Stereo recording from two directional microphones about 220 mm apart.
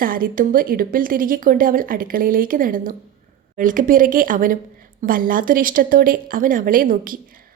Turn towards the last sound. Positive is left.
turn(degrees=-40)  # may be behind; listen again after turning